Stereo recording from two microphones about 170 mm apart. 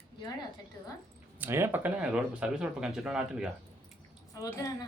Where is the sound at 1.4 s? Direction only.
15° right (ahead or behind).